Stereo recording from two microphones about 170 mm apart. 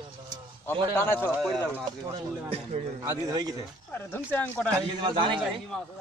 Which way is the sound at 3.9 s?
15° left (ahead or behind).